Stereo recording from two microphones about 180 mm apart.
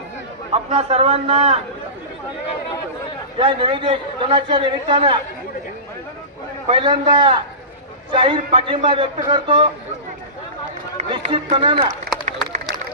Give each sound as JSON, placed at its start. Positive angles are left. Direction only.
{"t": 0.5, "sound": "a man's voice", "side_deg": -35}
{"t": 3.3, "sound": "a man's voice", "side_deg": -30}
{"t": 6.7, "sound": "a man's voice", "side_deg": -30}
{"t": 11.1, "sound": "a man's voice", "side_deg": -30}